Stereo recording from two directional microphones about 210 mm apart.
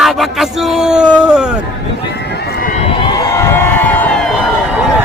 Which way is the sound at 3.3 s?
10° left (ahead or behind).